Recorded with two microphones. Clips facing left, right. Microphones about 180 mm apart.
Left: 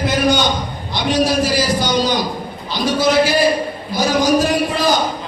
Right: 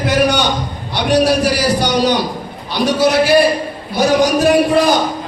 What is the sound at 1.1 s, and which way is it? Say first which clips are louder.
Speech: right 3 dB; 70° right (ahead or behind).